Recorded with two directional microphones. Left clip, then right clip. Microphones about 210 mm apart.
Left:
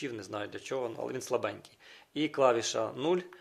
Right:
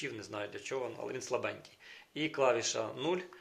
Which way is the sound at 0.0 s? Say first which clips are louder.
Left 2 dB; 55° left (ahead or behind).